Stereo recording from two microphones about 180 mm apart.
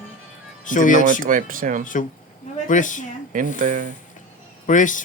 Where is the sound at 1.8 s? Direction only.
45° left (ahead or behind).